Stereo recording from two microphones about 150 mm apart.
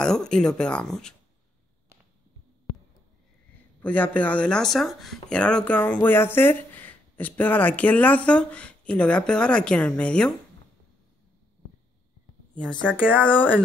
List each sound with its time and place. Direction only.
0.0 s speech: 5° left (ahead or behind)
3.8 s speech: 10° left (ahead or behind)
12.8 s speech: 10° right (ahead or behind)
13.2 s speech: 10° left (ahead or behind)